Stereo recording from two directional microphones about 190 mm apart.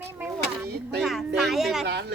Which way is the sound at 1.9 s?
65° right (ahead or behind).